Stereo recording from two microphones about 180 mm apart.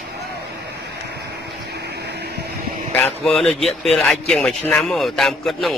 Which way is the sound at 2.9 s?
5° left (ahead or behind).